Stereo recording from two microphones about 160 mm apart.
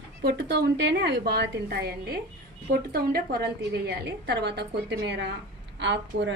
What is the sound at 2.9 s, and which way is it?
A woman's voice, 75° right (ahead or behind).